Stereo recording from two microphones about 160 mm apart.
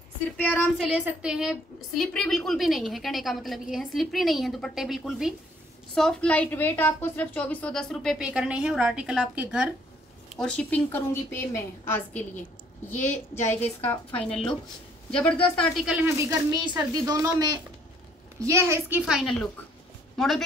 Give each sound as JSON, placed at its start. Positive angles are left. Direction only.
{"t": 0.4, "sound": "a woman's voice", "side_deg": 10}
{"t": 0.9, "sound": "a woman's voice", "side_deg": -5}
{"t": 10.3, "sound": "a woman's voice", "side_deg": 5}
{"t": 15.0, "sound": "a woman's voice", "side_deg": 5}
{"t": 16.2, "sound": "a woman's voice", "side_deg": -20}